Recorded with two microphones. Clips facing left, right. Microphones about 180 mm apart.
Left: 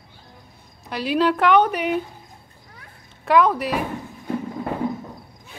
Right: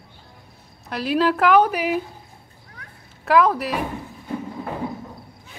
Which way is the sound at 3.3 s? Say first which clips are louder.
Even; centre (ahead or behind).